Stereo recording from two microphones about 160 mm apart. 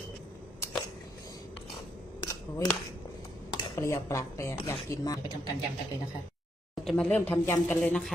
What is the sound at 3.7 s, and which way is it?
Speech, 20° left (ahead or behind).